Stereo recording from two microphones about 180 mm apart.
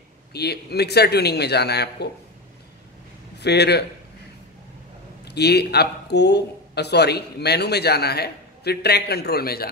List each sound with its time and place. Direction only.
0.3 s speech: 65° left (ahead or behind)
3.3 s a man's voice: 65° left (ahead or behind)
5.2 s speech: 65° left (ahead or behind)